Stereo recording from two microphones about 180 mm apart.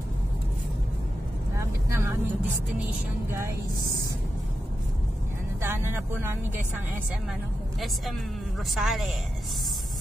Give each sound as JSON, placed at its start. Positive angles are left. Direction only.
{"t": 1.9, "sound": "vehicle", "side_deg": -15}
{"t": 3.3, "sound": "speech", "side_deg": -15}
{"t": 5.6, "sound": "speech", "side_deg": -15}
{"t": 8.7, "sound": "speech", "side_deg": 0}